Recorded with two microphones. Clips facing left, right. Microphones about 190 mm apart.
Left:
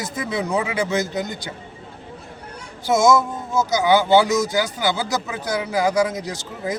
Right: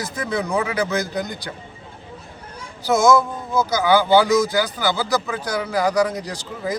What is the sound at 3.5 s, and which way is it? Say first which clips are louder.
Speech: even; 20° left (ahead or behind).